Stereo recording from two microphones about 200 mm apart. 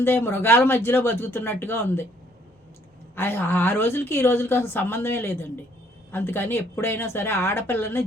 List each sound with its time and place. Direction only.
0.0 s a woman's voice: 10° left (ahead or behind)
3.2 s a woman's voice: 10° left (ahead or behind)